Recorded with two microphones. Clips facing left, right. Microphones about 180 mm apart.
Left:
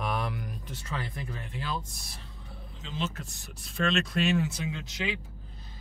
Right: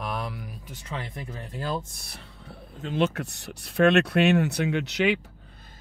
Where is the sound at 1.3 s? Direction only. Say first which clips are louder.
Right 6 dB; 40° right (ahead or behind).